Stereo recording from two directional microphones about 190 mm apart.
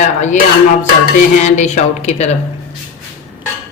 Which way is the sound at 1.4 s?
40° left (ahead or behind).